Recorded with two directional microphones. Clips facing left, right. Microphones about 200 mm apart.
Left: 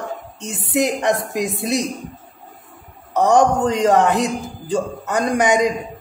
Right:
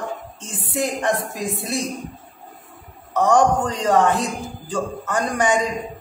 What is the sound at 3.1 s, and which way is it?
A man's voice, 20° left (ahead or behind).